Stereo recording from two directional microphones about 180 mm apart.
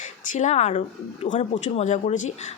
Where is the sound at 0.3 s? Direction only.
40° left (ahead or behind).